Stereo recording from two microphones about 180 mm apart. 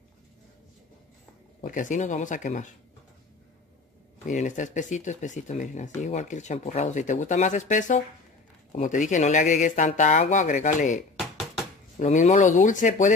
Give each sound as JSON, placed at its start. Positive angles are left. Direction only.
{"t": 1.6, "sound": "speech", "side_deg": 45}
{"t": 4.3, "sound": "speech", "side_deg": 45}
{"t": 12.0, "sound": "speech", "side_deg": 45}